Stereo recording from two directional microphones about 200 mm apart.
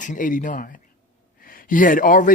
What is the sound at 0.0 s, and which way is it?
A man's voice, 40° left (ahead or behind).